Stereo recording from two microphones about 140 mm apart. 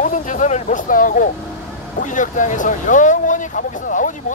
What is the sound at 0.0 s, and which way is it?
Speech, 65° left (ahead or behind).